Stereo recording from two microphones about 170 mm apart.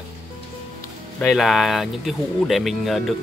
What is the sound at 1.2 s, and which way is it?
Speech, centre (ahead or behind).